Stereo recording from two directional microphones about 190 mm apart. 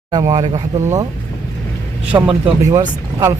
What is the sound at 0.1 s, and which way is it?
Speech, 20° right (ahead or behind).